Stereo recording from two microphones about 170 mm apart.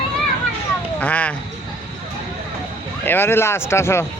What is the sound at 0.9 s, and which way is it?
Speech, 10° left (ahead or behind).